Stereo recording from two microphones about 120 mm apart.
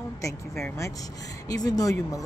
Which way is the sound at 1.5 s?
30° left (ahead or behind).